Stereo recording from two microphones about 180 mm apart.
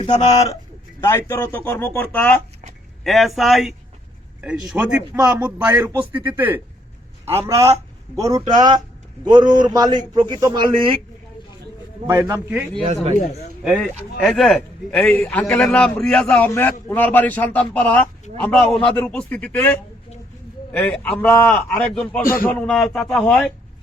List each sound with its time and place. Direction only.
0.0 s speech: 40° left (ahead or behind)
1.0 s a man's voice: 15° left (ahead or behind); by 5.8 s 10° right (ahead or behind)
5.8 s a man's voice: 20° right (ahead or behind)
6.1 s a man's voice: 10° right (ahead or behind); by 10.9 s 25° right (ahead or behind)
12.0 s a man's voice: 15° right (ahead or behind)
14.2 s a man's voice: centre (ahead or behind)
22.2 s a man's voice: 50° left (ahead or behind)
22.4 s speech: 5° left (ahead or behind)